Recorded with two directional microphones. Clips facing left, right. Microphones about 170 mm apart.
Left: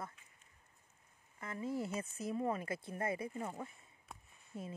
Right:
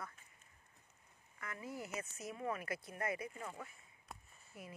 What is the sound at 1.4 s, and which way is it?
Speech, 25° left (ahead or behind).